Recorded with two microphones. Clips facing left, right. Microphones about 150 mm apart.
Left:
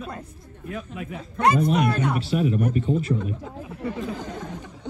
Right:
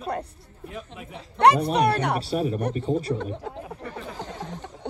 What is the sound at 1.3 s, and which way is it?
Speech, 70° right (ahead or behind).